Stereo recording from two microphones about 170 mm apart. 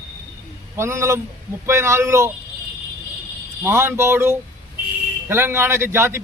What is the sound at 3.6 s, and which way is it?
A man's voice, 15° right (ahead or behind).